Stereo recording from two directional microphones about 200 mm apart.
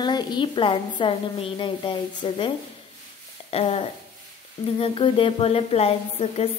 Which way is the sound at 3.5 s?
30° left (ahead or behind).